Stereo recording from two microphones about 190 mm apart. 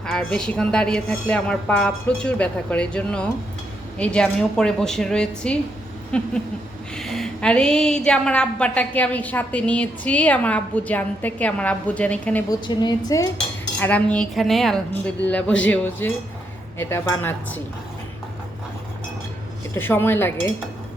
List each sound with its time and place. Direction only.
0.0 s a woman's voice: 5° left (ahead or behind)
12.5 s a woman's voice: 20° left (ahead or behind)
19.7 s a woman's voice: 10° left (ahead or behind)